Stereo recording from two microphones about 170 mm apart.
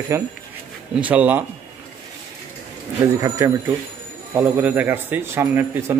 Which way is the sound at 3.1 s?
20° right (ahead or behind).